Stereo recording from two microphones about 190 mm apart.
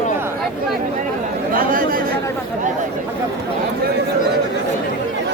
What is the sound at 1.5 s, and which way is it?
Chatter, 45° right (ahead or behind).